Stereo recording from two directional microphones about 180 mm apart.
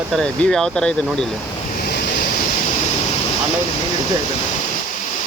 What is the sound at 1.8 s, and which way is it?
Waves, 60° left (ahead or behind).